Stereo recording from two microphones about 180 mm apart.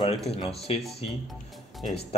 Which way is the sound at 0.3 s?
35° left (ahead or behind).